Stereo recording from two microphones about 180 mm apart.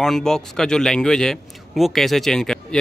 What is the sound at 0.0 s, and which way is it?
Speech, centre (ahead or behind).